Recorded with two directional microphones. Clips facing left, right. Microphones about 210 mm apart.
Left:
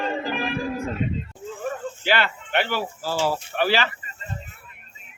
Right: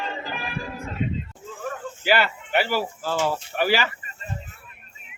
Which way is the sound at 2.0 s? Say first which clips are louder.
Right 3 dB; 10° right (ahead or behind).